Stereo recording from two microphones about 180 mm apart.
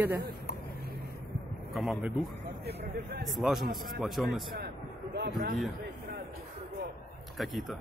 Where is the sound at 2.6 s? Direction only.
60° right (ahead or behind).